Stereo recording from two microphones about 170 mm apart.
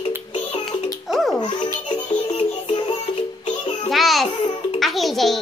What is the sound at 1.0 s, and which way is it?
Music, centre (ahead or behind).